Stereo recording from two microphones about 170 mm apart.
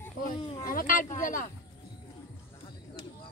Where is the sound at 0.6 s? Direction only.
55° left (ahead or behind).